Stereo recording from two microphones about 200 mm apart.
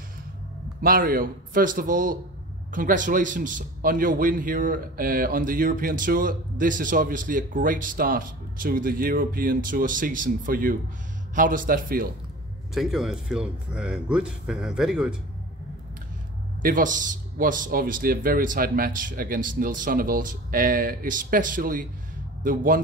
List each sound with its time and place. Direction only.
0.7 s a man's voice: 45° right (ahead or behind)
12.7 s a man's voice: centre (ahead or behind)
16.6 s a man's voice: 40° right (ahead or behind)